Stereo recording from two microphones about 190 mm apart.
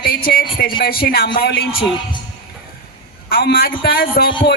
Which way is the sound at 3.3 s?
55° left (ahead or behind).